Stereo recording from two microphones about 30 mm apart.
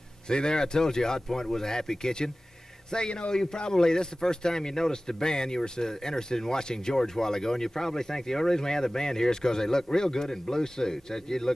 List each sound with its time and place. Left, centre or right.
0.3 s a man's voice: left